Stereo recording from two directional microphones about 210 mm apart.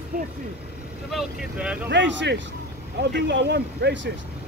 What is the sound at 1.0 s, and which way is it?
Speech, 5° right (ahead or behind).